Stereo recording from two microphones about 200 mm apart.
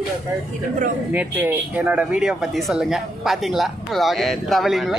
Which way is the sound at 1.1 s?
10° right (ahead or behind).